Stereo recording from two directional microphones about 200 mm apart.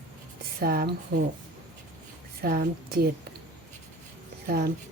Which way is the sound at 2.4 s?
50° right (ahead or behind).